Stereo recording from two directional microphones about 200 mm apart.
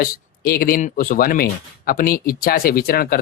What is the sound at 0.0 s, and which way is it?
Speech, 45° left (ahead or behind).